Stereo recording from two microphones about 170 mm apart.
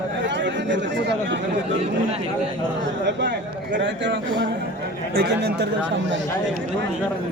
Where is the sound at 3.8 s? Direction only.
90° right.